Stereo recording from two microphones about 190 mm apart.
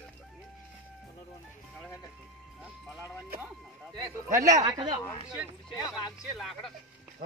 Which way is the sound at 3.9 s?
15° right (ahead or behind).